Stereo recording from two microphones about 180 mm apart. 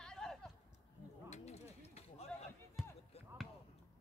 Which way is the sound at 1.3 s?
35° left (ahead or behind).